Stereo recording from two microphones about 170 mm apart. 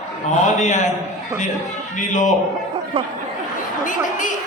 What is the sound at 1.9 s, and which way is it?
Speech, 45° left (ahead or behind).